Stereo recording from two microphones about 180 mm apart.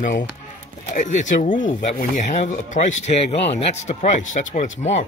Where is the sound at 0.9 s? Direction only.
45° left (ahead or behind).